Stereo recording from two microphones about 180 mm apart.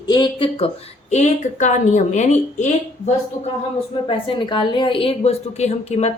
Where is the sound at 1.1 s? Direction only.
40° left (ahead or behind).